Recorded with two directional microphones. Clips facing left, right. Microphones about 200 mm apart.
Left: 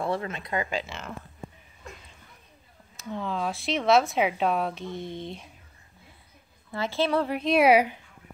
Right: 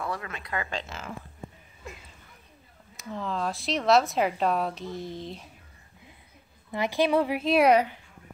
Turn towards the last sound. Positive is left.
turn(degrees=5)  # may be behind; listen again after turning